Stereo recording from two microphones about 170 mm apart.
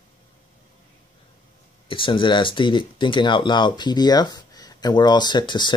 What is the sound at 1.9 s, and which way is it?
Speech, 30° left (ahead or behind).